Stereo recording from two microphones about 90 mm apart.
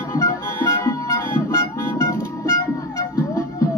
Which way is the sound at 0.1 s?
35° left (ahead or behind).